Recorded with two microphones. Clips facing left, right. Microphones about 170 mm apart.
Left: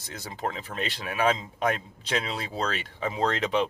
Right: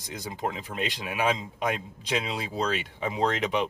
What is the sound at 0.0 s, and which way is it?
Speech, 15° right (ahead or behind).